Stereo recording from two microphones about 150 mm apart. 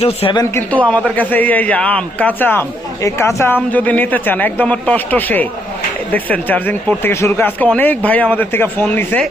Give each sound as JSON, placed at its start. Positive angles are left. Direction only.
{"t": 0.0, "sound": "speech", "side_deg": 40}
{"t": 1.1, "sound": "a man's voice", "side_deg": 10}